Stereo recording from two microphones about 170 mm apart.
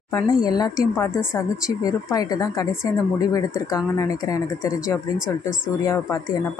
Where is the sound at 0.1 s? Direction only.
25° left (ahead or behind).